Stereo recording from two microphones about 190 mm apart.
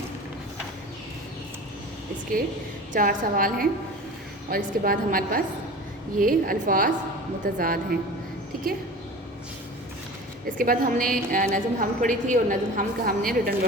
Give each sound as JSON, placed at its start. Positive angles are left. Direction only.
{"t": 2.9, "sound": "a woman's voice", "side_deg": -45}
{"t": 10.6, "sound": "a woman's voice", "side_deg": -50}